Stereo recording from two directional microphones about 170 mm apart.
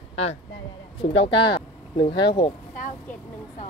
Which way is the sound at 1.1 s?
30° left (ahead or behind).